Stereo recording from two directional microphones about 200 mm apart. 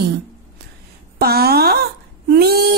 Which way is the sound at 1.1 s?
50° right (ahead or behind).